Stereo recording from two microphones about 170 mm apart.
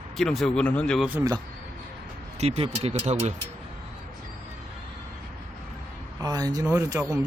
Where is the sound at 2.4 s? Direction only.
40° right (ahead or behind).